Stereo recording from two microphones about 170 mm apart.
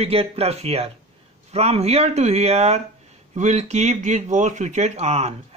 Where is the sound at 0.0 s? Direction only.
35° right (ahead or behind).